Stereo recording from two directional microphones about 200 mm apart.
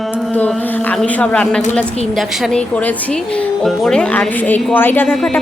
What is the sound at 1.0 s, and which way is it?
A woman's voice, 5° left (ahead or behind).